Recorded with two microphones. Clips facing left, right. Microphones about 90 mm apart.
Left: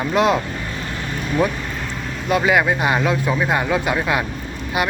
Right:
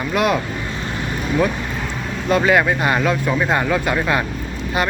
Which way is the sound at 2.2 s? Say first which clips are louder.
Right 1 dB; 10° left (ahead or behind).